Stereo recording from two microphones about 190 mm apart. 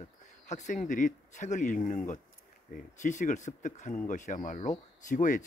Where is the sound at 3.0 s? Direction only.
40° left (ahead or behind).